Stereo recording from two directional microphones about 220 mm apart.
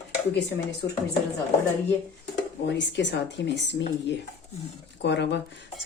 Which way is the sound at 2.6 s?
50° left (ahead or behind).